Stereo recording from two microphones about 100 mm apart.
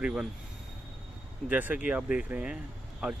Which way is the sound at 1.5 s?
20° right (ahead or behind).